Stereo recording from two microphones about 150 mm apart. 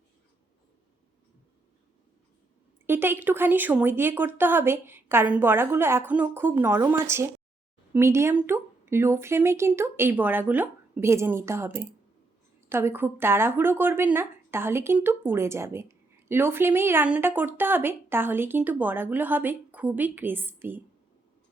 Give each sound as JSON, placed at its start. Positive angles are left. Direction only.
{"t": 2.8, "sound": "speech", "side_deg": -15}